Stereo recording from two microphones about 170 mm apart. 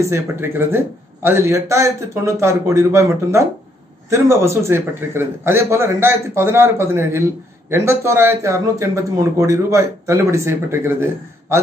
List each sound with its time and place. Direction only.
0.0 s a man's voice: 15° right (ahead or behind)